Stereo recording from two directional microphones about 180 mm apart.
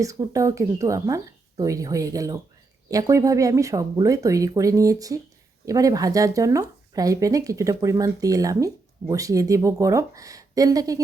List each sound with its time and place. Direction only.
0.0 s speech: 20° right (ahead or behind)